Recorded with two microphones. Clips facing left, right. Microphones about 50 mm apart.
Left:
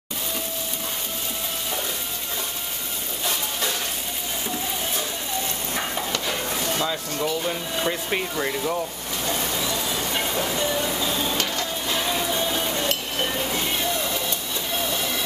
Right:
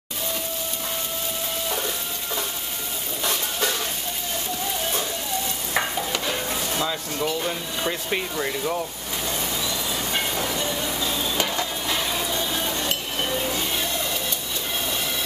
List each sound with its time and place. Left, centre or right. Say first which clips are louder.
6.8 s speech: even; centre
11.3 s frying: right 1 dB; centre
12.3 s a sound: left 2 dB; centre